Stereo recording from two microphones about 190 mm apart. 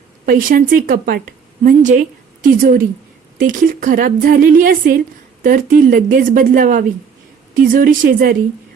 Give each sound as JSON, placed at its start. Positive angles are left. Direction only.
{"t": 0.3, "sound": "a woman's voice", "side_deg": -45}